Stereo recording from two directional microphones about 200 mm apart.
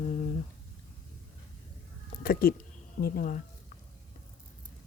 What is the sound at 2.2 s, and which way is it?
Speech, 45° left (ahead or behind).